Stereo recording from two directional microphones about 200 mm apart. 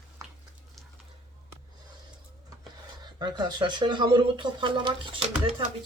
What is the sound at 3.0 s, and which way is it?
Speech, 20° right (ahead or behind).